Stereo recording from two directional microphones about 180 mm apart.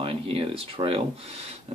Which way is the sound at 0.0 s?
30° right (ahead or behind).